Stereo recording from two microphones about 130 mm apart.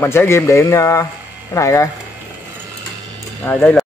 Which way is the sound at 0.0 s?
20° left (ahead or behind).